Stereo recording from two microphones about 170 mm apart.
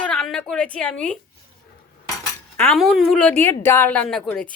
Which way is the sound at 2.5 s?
10° left (ahead or behind).